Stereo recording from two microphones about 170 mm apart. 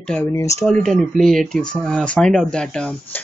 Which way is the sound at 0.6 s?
5° left (ahead or behind).